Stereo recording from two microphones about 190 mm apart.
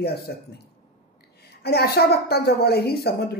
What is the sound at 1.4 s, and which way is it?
A man's voice, 55° left (ahead or behind).